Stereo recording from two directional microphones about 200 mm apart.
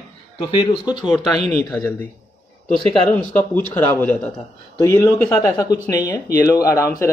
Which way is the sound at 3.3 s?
10° left (ahead or behind).